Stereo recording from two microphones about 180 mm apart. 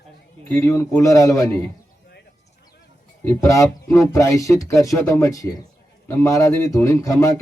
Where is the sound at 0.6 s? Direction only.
15° left (ahead or behind).